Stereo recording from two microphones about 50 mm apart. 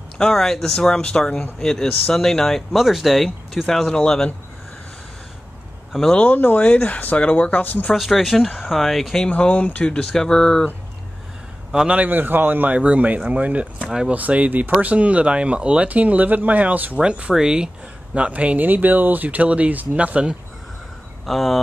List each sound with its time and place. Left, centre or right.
0.2 s speech: centre
3.6 s speech: centre
6.3 s speech: left
7.9 s speech: centre
9.3 s speech: left; by 10.6 s centre
11.9 s speech: right
12.7 s speech: right
18.1 s speech: right
21.3 s speech: centre